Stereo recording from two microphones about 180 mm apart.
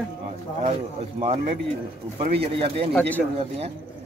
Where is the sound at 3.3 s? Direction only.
35° right (ahead or behind).